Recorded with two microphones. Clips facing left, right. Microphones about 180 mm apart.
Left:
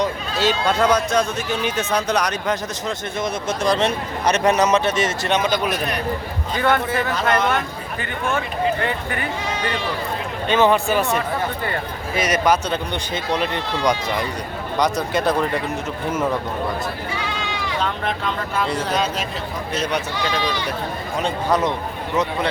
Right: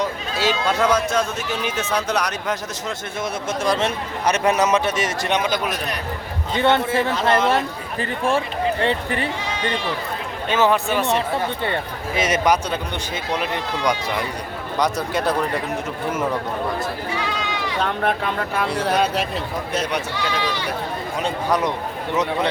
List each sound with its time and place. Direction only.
0.0 s a man's voice: 5° right (ahead or behind)
6.5 s speech: 25° right (ahead or behind)
10.5 s speech: centre (ahead or behind)
11.6 s speech: 25° right (ahead or behind)
13.3 s a man's voice: 5° right (ahead or behind)
17.8 s speech: 55° right (ahead or behind)